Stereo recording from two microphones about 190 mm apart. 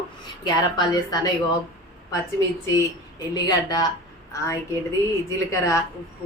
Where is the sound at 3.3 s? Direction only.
20° left (ahead or behind).